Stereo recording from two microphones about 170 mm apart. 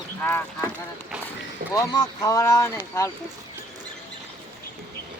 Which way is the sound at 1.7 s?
20° left (ahead or behind).